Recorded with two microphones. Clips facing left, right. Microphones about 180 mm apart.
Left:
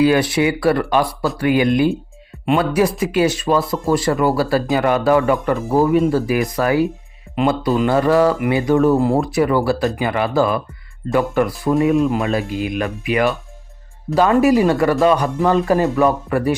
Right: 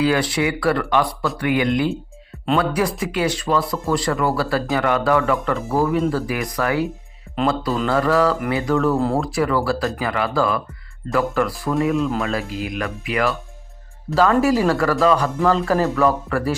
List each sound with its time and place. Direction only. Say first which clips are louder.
0.0 s speech: left 4 dB; 25° left (ahead or behind)
7.3 s music: left 3 dB; 20° left (ahead or behind)
7.9 s speech: left 3 dB; 25° left (ahead or behind)